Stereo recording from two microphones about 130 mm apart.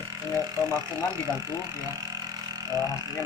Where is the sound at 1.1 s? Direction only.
25° right (ahead or behind).